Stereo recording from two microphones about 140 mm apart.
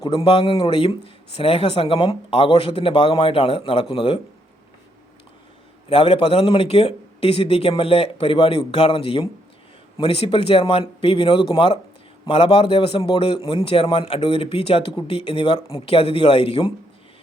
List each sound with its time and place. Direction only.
0.1 s a man's voice: 40° left (ahead or behind)
5.9 s a man's voice: 40° left (ahead or behind)